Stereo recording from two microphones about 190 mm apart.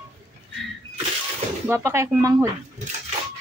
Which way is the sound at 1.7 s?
15° right (ahead or behind).